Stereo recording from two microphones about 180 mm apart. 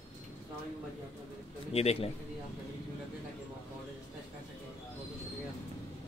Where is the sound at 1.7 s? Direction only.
35° left (ahead or behind).